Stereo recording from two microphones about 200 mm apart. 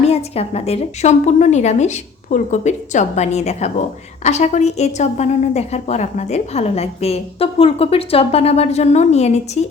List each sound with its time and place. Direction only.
0.0 s a woman's voice: 30° left (ahead or behind)